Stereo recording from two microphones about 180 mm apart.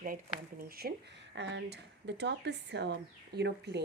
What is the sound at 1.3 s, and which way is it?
Speech, 85° right.